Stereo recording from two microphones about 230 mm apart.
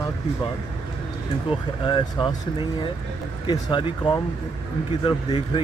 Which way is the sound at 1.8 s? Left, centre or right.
Centre.